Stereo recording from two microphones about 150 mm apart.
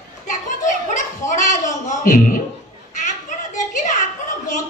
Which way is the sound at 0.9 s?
55° left (ahead or behind).